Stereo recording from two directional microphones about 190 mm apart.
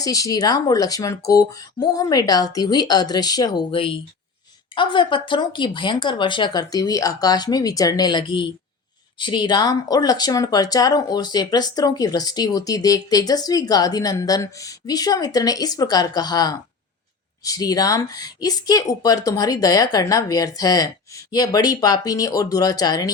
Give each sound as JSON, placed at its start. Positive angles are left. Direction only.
{"t": 0.0, "sound": "speech", "side_deg": 20}